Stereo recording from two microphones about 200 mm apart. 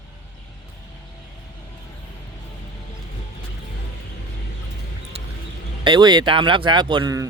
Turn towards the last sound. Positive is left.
turn(degrees=-20)  # may be behind; listen again after turning